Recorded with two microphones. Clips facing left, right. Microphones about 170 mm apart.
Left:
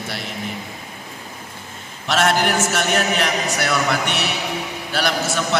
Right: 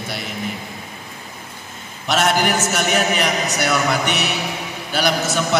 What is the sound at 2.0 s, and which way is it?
A man's voice, centre (ahead or behind).